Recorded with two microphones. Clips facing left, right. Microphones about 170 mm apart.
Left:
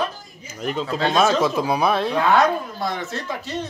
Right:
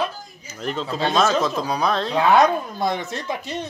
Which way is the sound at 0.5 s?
5° left (ahead or behind).